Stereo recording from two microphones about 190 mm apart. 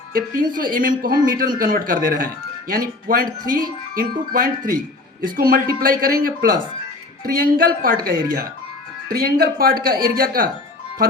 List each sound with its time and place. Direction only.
0.5 s speech: 45° right (ahead or behind)